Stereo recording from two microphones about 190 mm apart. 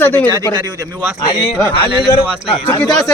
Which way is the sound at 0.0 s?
10° left (ahead or behind).